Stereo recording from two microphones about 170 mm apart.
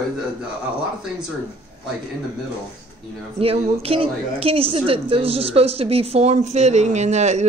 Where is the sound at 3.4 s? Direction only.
35° right (ahead or behind).